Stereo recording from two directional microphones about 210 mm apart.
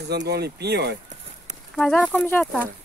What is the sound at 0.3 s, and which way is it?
Speech, 50° right (ahead or behind).